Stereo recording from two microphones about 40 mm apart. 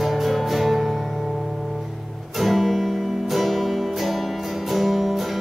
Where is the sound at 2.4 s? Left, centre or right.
Centre.